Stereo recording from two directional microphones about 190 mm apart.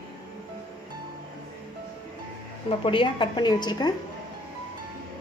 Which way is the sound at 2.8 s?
25° left (ahead or behind).